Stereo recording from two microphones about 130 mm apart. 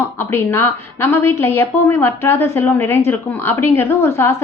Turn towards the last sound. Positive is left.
turn(degrees=20)  # may be behind; listen again after turning